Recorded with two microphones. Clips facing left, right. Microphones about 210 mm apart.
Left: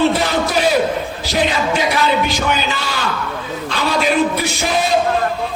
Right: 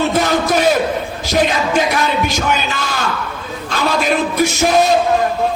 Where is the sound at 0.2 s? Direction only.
45° right (ahead or behind).